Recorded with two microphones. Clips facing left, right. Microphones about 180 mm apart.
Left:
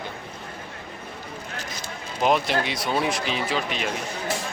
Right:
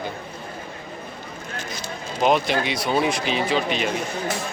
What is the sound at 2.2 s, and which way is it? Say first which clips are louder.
Speech: right 2 dB; centre (ahead or behind).